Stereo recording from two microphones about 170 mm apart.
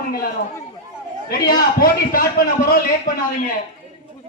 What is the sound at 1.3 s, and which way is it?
A man's voice, 60° left (ahead or behind).